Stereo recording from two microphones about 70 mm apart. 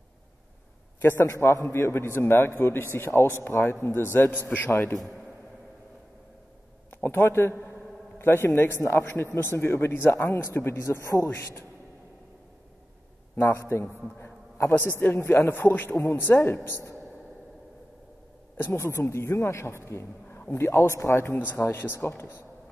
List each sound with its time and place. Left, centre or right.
1.0 s a man's voice: left
1.3 s a man's voice: left
4.9 s a man's voice: centre
6.9 s a man's voice: left
13.5 s a man's voice: left
18.8 s a man's voice: left